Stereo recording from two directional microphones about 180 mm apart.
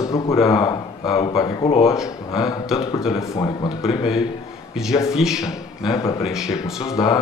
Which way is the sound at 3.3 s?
25° left (ahead or behind).